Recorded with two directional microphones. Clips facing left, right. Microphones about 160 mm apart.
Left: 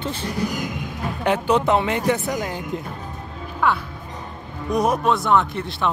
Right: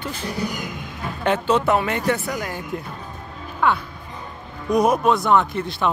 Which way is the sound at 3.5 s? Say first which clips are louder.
Right 1 dB; centre (ahead or behind).